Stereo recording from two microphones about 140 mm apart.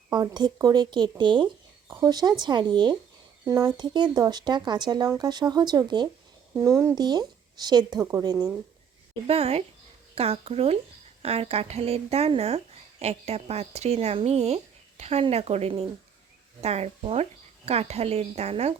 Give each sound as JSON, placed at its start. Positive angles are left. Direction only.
{"t": 0.1, "sound": "speech", "side_deg": -30}
{"t": 9.2, "sound": "speech", "side_deg": -45}